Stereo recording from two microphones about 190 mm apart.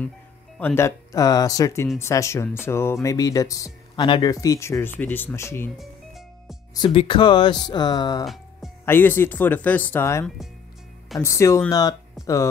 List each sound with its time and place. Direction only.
0.6 s speech: 10° left (ahead or behind)
6.7 s speech: 25° left (ahead or behind)
12.2 s speech: centre (ahead or behind)